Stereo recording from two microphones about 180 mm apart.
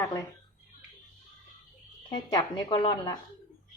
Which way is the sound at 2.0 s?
20° left (ahead or behind).